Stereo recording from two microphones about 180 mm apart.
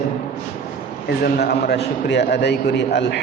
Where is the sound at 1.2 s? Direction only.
60° left (ahead or behind).